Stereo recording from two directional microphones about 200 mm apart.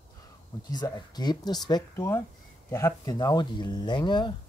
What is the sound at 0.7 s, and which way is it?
Speech, 20° left (ahead or behind).